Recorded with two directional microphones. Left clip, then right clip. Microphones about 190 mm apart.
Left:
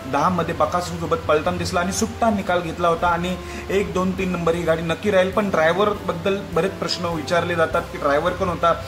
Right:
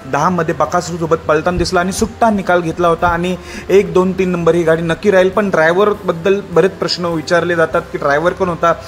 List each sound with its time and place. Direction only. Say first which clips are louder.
0.1 s a man's voice: right 6 dB; 40° right (ahead or behind)